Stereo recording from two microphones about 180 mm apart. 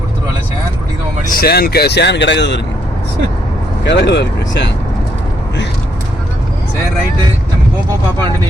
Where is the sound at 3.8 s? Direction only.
70° left (ahead or behind).